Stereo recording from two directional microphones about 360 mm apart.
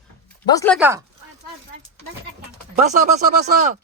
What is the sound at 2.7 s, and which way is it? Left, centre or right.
Speech, centre.